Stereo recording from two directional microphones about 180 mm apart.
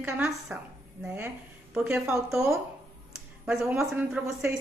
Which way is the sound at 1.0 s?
10° right (ahead or behind).